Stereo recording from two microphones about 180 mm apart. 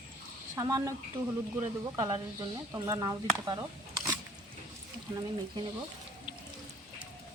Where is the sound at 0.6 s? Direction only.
20° right (ahead or behind).